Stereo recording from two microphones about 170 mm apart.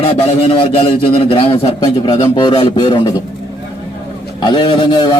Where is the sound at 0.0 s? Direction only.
35° left (ahead or behind).